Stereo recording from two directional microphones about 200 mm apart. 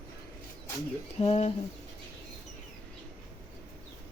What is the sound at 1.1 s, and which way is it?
Speech, 30° left (ahead or behind).